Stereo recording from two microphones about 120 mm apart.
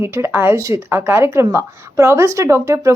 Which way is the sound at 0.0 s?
20° right (ahead or behind).